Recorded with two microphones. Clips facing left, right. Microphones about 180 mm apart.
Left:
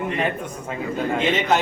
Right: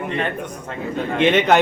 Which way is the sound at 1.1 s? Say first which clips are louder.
Right 6 dB; 65° right (ahead or behind).